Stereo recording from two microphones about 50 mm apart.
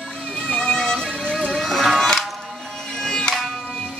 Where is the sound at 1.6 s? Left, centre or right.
Centre.